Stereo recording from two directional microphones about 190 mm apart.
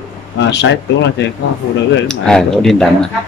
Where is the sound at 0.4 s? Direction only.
65° left (ahead or behind).